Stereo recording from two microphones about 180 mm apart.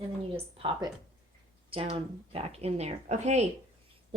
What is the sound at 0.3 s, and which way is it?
Speech, 25° right (ahead or behind).